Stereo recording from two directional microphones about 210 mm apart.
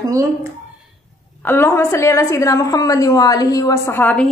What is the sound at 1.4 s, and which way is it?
A woman's voice, 10° left (ahead or behind).